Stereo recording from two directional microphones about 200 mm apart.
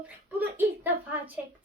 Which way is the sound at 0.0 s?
10° right (ahead or behind).